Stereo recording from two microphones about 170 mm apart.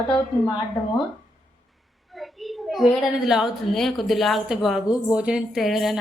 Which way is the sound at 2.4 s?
Centre (ahead or behind).